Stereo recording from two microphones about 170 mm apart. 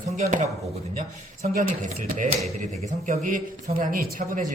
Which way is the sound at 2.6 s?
40° right (ahead or behind).